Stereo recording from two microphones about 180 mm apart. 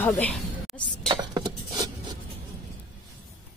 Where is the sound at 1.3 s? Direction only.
20° right (ahead or behind).